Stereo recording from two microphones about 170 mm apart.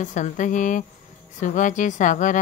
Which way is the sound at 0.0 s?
45° left (ahead or behind).